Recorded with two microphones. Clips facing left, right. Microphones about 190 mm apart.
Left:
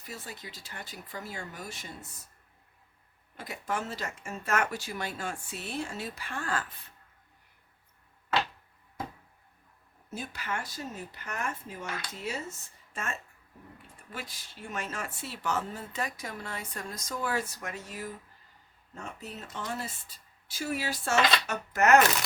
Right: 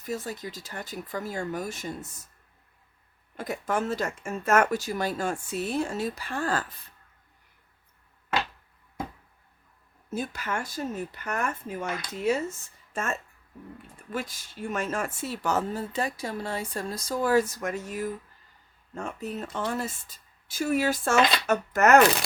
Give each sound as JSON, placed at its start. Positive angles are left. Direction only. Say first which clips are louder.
{"t": 0.0, "sound": "speech", "louder": "right 10 dB", "side_deg": -45}
{"t": 3.3, "sound": "speech", "louder": "right 6 dB", "side_deg": -50}
{"t": 10.1, "sound": "speech", "louder": "right 5 dB", "side_deg": -45}